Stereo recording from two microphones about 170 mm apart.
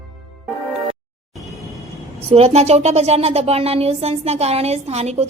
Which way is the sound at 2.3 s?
40° right (ahead or behind).